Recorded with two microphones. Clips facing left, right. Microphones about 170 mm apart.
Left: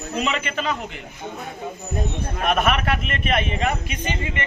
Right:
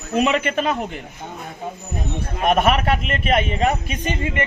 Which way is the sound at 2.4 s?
30° right (ahead or behind).